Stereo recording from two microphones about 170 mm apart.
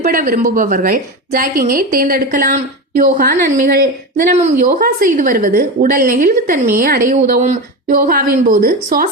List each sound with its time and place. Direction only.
0.0 s a woman's voice: 55° right (ahead or behind)